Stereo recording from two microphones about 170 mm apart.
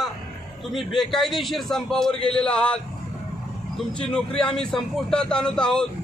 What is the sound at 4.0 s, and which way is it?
A man's voice, 5° left (ahead or behind).